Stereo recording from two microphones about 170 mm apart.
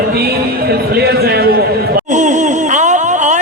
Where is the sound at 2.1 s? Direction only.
45° right (ahead or behind).